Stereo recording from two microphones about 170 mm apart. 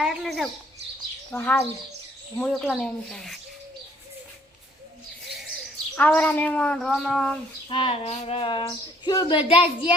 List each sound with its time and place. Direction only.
0.0 s speech: centre (ahead or behind)
6.0 s speech: 10° left (ahead or behind)
7.7 s speech: 35° left (ahead or behind)